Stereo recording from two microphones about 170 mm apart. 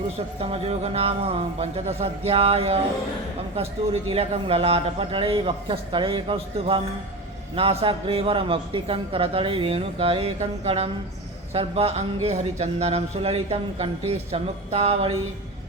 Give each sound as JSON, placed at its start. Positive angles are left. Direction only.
{"t": 0.3, "sound": "speech", "side_deg": -35}
{"t": 4.1, "sound": "speech", "side_deg": -35}